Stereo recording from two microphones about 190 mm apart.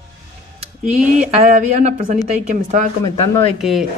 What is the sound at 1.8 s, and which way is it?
Speech, 40° right (ahead or behind).